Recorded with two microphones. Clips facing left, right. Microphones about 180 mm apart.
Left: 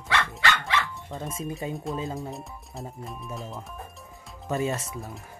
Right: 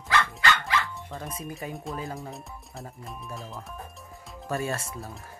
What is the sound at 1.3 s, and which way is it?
Speech, 25° left (ahead or behind).